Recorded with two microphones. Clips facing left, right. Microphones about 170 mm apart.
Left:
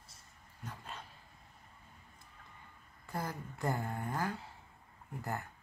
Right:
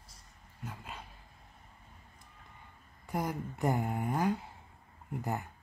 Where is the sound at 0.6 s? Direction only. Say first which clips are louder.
Right 2 dB; 10° right (ahead or behind).